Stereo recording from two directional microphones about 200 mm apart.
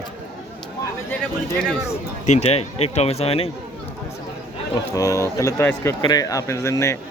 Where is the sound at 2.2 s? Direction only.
35° left (ahead or behind).